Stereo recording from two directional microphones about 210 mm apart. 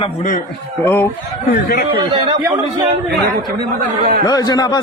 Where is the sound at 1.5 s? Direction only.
45° left (ahead or behind).